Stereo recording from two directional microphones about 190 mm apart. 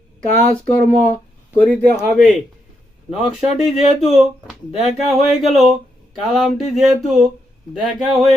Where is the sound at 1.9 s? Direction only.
5° right (ahead or behind).